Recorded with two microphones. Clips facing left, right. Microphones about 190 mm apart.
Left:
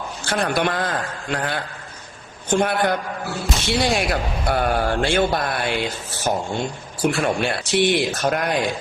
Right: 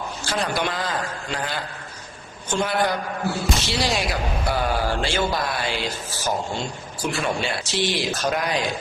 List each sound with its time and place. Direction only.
0.3 s speech: 60° left (ahead or behind)